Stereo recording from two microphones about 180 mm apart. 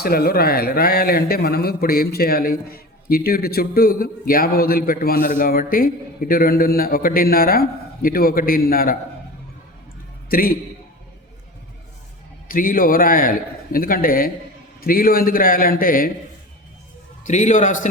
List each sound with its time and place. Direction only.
0.0 s speech: 55° left (ahead or behind)
10.2 s a man's voice: 55° left (ahead or behind)
12.5 s a man's voice: 50° left (ahead or behind)
17.2 s a man's voice: 45° left (ahead or behind)